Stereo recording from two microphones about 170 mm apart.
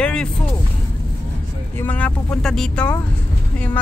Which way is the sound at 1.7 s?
10° left (ahead or behind).